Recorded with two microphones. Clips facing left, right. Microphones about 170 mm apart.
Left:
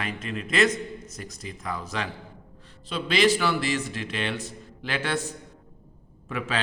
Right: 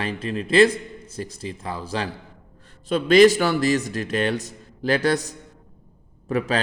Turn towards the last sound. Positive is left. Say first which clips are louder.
# right 7 dB
turn(degrees=-40)  # may be behind; listen again after turning